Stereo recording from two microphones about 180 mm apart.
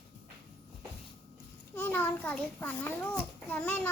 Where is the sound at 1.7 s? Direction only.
10° left (ahead or behind).